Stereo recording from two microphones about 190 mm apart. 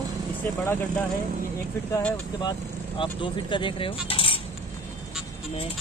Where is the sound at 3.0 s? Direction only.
25° left (ahead or behind).